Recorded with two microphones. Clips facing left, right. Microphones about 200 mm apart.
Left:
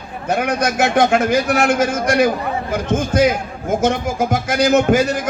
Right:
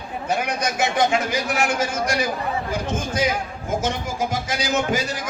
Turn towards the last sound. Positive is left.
turn(degrees=50)  # may be behind; listen again after turning